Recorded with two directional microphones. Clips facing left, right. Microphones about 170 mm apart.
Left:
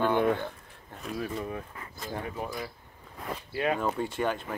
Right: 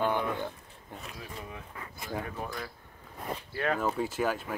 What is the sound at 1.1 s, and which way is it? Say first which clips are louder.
Speech: left 13 dB; 50° left (ahead or behind).